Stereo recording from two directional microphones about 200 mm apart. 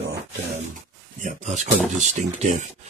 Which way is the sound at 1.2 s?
35° right (ahead or behind).